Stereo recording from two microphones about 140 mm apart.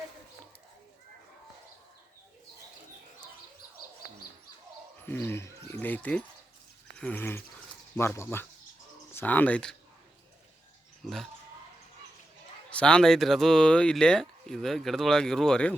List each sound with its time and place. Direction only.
5.0 s speech: 15° left (ahead or behind)
11.0 s speech: centre (ahead or behind)
12.7 s speech: 5° left (ahead or behind)